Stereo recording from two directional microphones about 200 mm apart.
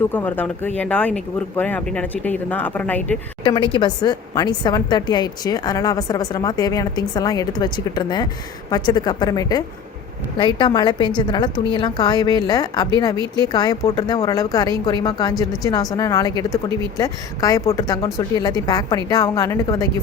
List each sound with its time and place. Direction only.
0.1 s a woman's voice: 10° left (ahead or behind)
3.4 s a woman's voice: 25° left (ahead or behind)